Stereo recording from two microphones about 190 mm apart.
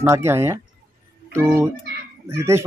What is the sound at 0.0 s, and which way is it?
A man's voice, 15° right (ahead or behind).